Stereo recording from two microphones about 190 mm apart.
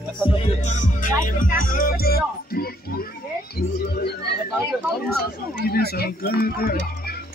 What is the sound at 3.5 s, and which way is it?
Music, 55° left (ahead or behind).